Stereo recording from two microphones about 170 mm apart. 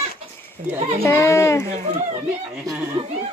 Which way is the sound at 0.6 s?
55° right (ahead or behind).